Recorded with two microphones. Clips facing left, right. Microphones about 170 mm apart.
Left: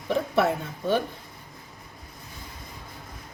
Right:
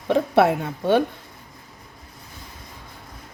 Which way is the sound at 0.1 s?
65° right (ahead or behind).